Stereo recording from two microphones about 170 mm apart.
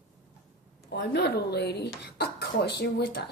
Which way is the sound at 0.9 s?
75° left (ahead or behind).